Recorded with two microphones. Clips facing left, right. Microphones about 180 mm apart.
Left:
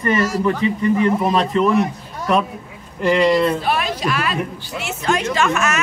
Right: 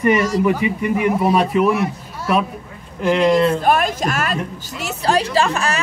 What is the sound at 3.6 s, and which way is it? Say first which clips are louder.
Speech: right 4 dB; 45° right (ahead or behind).